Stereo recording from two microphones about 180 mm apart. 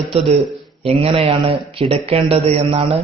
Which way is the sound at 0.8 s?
35° right (ahead or behind).